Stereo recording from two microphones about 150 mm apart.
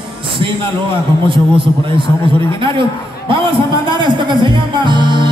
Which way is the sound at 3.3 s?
30° right (ahead or behind).